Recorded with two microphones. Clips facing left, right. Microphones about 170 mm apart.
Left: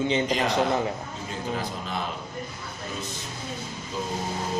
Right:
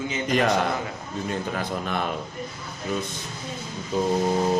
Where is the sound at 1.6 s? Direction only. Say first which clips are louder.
Right 4 dB; 60° right (ahead or behind).